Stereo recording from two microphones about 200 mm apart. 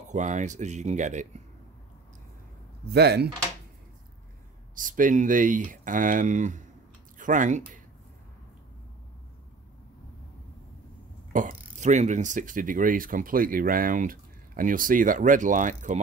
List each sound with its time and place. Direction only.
0.1 s speech: 35° right (ahead or behind)
2.9 s speech: 55° right (ahead or behind)
4.7 s speech: 40° right (ahead or behind)
11.3 s speech: 40° right (ahead or behind)